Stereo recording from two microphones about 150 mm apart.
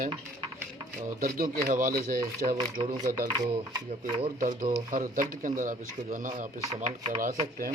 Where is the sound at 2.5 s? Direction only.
30° right (ahead or behind).